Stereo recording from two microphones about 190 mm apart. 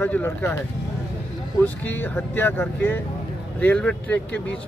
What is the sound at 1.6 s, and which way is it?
Speech, 10° left (ahead or behind).